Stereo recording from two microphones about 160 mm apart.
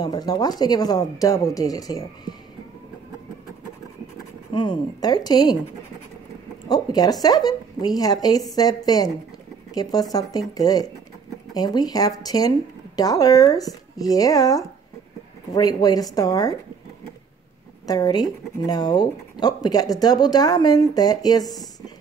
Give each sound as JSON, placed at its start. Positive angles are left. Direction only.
{"t": 0.0, "sound": "speech", "side_deg": 25}
{"t": 4.6, "sound": "speech", "side_deg": 25}
{"t": 6.7, "sound": "speech", "side_deg": 25}
{"t": 17.8, "sound": "speech", "side_deg": 25}